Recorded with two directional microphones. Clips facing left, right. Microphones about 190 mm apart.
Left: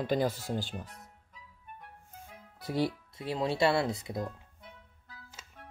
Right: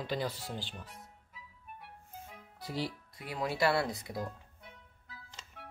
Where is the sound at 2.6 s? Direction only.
55° left (ahead or behind).